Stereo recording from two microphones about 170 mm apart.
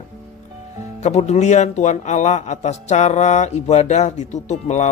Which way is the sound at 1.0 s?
40° left (ahead or behind).